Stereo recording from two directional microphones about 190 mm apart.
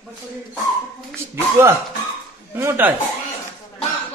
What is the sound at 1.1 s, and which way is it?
Speech, 15° right (ahead or behind).